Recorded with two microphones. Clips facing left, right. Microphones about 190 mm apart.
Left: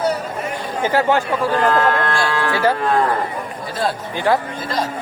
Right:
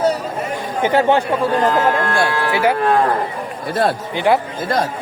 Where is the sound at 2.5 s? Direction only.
10° right (ahead or behind).